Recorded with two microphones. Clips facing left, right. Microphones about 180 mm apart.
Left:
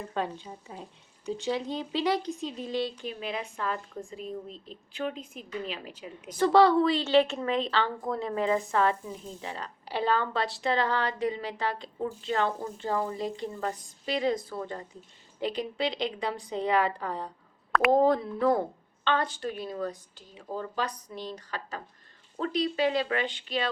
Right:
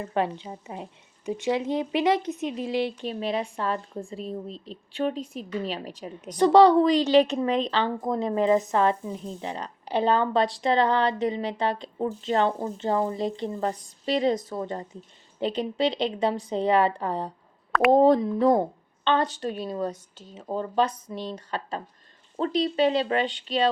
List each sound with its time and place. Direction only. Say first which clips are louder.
0.1 s a woman's voice: right 7 dB; 70° right (ahead or behind)
2.0 s a woman's voice: right 3 dB; 20° right (ahead or behind)
2.4 s speech: right 5 dB; 75° right (ahead or behind)
3.1 s a woman's voice: right 7 dB; 30° right (ahead or behind)
6.3 s a woman's voice: right 4 dB; 20° right (ahead or behind)
17.7 s a sound: right 4 dB; centre (ahead or behind)
17.9 s a woman's voice: right 6 dB; 25° right (ahead or behind)